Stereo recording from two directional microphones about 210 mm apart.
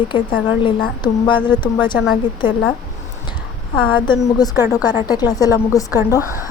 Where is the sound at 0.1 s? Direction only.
20° left (ahead or behind).